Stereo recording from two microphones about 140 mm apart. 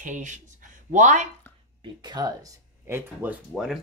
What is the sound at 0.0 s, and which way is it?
Speech, 65° right (ahead or behind).